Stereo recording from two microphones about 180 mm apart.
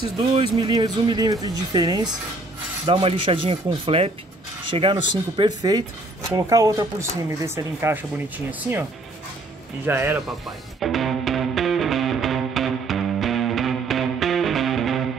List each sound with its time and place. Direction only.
0.3 s speech: 25° right (ahead or behind); by 8.8 s 10° right (ahead or behind)
9.8 s speech: 10° right (ahead or behind)
10.8 s music: centre (ahead or behind)